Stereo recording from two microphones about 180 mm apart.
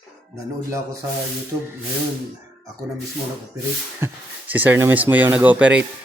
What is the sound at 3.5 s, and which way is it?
Speech, 15° right (ahead or behind).